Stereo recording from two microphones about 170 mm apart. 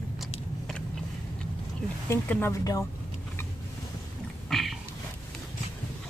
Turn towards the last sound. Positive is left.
turn(degrees=0)  # may be behind; listen again after turning